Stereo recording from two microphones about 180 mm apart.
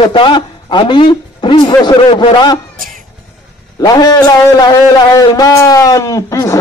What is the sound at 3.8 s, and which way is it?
A man's voice, 20° left (ahead or behind).